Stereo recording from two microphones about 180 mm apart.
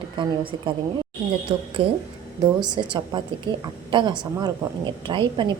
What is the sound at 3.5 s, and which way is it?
Speech, 60° right (ahead or behind).